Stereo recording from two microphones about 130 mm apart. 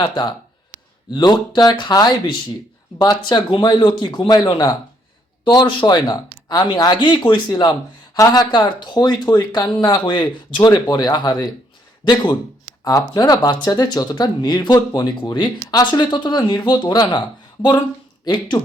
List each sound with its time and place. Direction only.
0.0 s speech: 35° left (ahead or behind)